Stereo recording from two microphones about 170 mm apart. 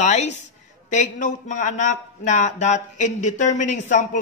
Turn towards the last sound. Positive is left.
turn(degrees=45)  # may be behind; listen again after turning